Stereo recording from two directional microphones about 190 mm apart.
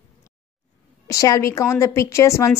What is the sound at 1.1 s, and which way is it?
A woman's voice, 15° left (ahead or behind).